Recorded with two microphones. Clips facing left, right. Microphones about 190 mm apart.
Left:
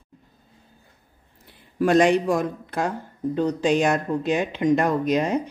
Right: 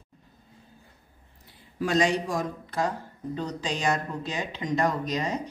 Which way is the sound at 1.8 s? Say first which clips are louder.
Left 7 dB; 55° left (ahead or behind).